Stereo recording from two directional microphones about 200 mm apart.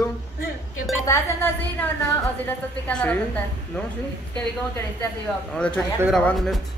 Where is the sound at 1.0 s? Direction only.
10° left (ahead or behind).